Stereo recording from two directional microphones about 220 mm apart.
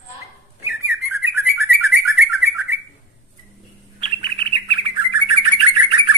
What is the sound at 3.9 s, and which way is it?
Bird, 25° right (ahead or behind).